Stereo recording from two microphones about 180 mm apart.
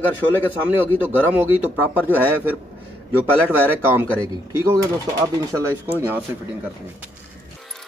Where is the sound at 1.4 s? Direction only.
10° right (ahead or behind).